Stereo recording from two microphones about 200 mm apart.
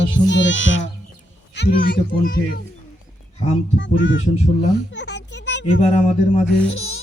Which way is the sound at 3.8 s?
65° left (ahead or behind).